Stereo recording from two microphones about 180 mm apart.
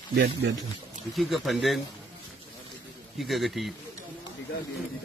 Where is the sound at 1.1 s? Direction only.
Centre (ahead or behind).